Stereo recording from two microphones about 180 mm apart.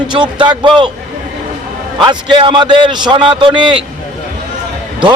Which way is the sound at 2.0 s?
25° right (ahead or behind).